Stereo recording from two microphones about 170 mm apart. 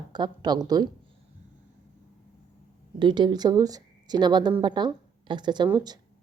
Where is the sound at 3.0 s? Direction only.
25° right (ahead or behind).